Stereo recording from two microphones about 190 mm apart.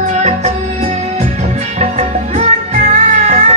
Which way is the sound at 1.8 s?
35° right (ahead or behind).